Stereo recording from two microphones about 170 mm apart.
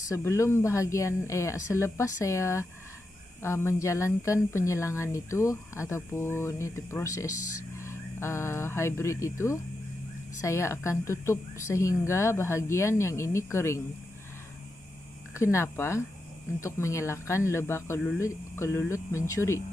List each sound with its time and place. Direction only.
0.1 s speech: 15° left (ahead or behind)
15.3 s speech: 15° left (ahead or behind)